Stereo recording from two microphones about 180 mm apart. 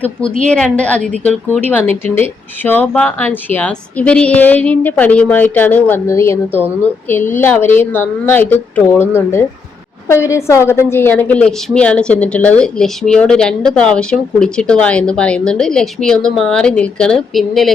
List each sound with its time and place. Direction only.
0.0 s a woman's voice: 5° left (ahead or behind)